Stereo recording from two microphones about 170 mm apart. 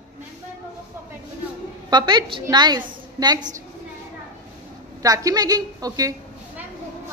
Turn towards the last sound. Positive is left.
turn(degrees=-20)  # may be behind; listen again after turning